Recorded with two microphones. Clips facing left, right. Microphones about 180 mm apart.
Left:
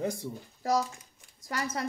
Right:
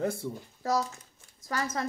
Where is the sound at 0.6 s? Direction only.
15° left (ahead or behind).